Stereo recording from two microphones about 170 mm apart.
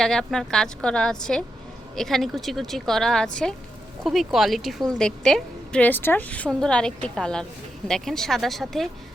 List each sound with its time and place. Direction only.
0.0 s a woman's voice: centre (ahead or behind)